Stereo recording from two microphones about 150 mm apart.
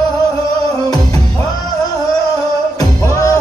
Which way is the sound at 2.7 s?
20° left (ahead or behind).